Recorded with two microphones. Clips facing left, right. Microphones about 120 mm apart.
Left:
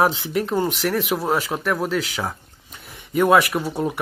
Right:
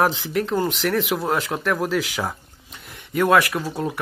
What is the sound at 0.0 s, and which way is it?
Speech, centre (ahead or behind).